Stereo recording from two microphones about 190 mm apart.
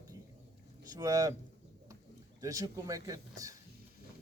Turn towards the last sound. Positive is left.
turn(degrees=-20)  # may be behind; listen again after turning